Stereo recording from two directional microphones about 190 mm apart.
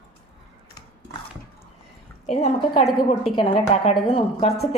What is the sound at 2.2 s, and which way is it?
A woman's voice, 35° left (ahead or behind).